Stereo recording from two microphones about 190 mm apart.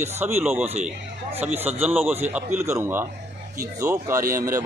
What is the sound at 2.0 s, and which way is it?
Speech, 35° right (ahead or behind).